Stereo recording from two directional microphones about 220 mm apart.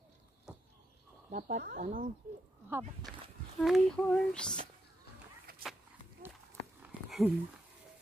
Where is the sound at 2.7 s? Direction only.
10° right (ahead or behind).